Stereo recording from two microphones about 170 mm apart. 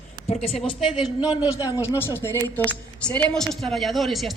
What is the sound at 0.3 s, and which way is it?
Speech, 40° left (ahead or behind).